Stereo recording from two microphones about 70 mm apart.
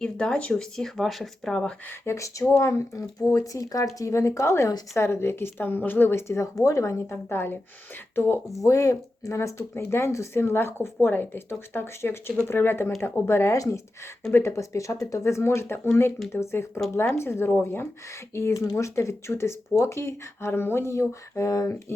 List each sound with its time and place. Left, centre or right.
0.0 s speech: centre
2.0 s speech: left
7.3 s speech: left
8.6 s speech: left
18.5 s speech: left